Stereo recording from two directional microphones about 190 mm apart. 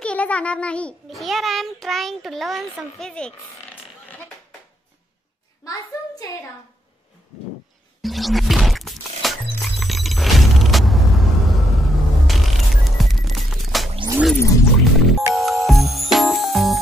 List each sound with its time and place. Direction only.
0.0 s a child's voice: 5° left (ahead or behind)
5.6 s a child's voice: 15° left (ahead or behind)
8.0 s music: centre (ahead or behind)
14.3 s music: 15° left (ahead or behind)
15.3 s music: centre (ahead or behind)